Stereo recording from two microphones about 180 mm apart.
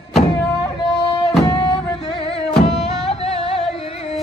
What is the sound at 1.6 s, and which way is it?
Music, 30° left (ahead or behind).